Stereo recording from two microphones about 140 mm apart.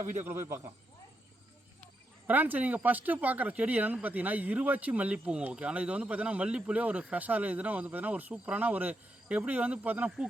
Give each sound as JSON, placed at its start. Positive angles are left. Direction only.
{"t": 0.0, "sound": "speech", "side_deg": -60}
{"t": 2.2, "sound": "speech", "side_deg": -10}